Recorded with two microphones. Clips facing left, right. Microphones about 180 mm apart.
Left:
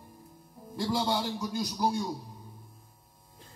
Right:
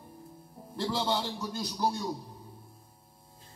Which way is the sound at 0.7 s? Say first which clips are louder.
Left 1 dB; 10° left (ahead or behind).